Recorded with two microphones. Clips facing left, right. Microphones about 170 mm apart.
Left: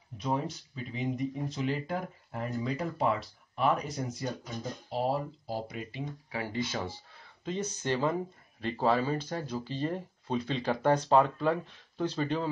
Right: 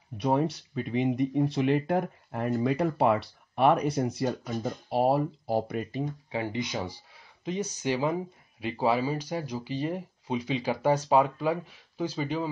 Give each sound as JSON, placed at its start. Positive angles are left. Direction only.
{"t": 0.2, "sound": "speech", "side_deg": -65}
{"t": 6.3, "sound": "speech", "side_deg": -20}